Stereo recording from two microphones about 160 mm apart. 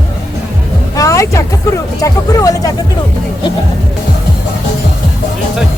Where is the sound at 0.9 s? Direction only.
20° left (ahead or behind).